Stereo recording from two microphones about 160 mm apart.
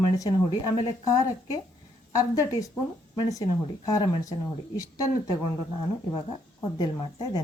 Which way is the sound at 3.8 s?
20° left (ahead or behind).